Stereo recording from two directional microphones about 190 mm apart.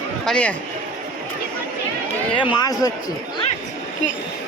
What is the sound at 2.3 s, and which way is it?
Speech, 25° left (ahead or behind).